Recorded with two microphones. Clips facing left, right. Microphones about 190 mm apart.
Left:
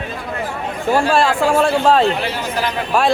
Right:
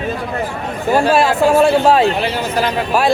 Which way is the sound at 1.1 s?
5° right (ahead or behind).